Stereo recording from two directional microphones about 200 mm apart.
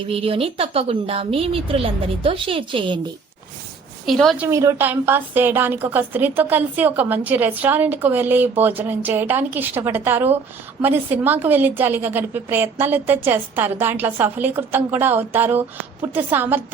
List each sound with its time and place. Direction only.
0.1 s a woman's voice: 30° right (ahead or behind)
4.0 s a woman's voice: centre (ahead or behind)
4.4 s a woman's voice: 15° right (ahead or behind)